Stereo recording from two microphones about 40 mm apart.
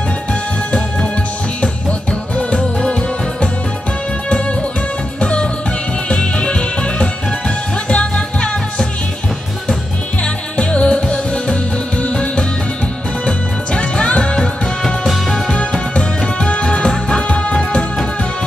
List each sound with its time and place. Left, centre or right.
0.3 s music: left
5.2 s music: left
10.2 s music: left
13.7 s music: left
15.0 s music: centre
15.9 s music: left